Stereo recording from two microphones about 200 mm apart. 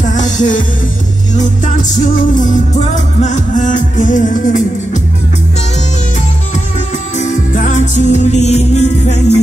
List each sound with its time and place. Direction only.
0.0 s music: 40° left (ahead or behind)
7.5 s music: 40° left (ahead or behind)